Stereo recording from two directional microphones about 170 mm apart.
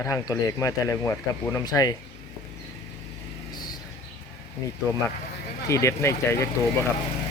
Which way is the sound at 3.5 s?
25° left (ahead or behind).